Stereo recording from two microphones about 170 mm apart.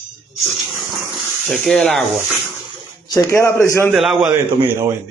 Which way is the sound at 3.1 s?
20° left (ahead or behind).